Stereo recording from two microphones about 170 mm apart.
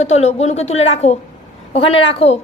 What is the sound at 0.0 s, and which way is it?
A woman's voice, 40° left (ahead or behind).